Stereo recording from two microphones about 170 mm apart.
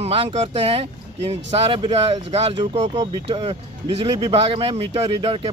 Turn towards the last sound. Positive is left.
turn(degrees=-30)  # may be behind; listen again after turning